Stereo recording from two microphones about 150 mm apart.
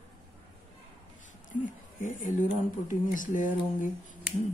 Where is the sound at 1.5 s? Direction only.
60° left (ahead or behind).